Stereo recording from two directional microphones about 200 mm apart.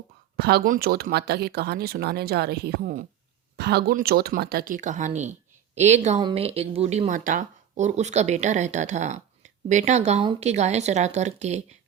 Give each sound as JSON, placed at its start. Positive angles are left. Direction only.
{"t": 0.3, "sound": "speech", "side_deg": -50}